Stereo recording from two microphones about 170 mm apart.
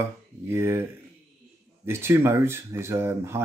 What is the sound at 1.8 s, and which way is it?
Speech, 15° right (ahead or behind).